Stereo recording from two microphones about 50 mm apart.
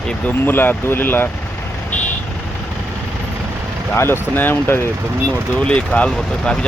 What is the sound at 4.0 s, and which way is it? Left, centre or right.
Speech, left.